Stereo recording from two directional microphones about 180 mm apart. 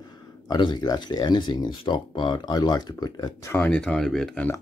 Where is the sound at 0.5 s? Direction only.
25° left (ahead or behind).